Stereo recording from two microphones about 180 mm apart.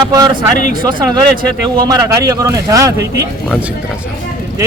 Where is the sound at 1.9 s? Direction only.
20° right (ahead or behind).